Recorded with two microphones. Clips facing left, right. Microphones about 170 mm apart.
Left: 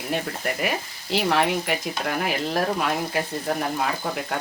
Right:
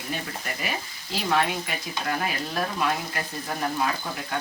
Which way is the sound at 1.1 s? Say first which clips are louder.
Left 3 dB; 75° left (ahead or behind).